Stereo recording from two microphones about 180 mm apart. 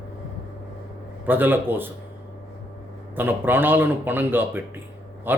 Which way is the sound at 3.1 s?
10° right (ahead or behind).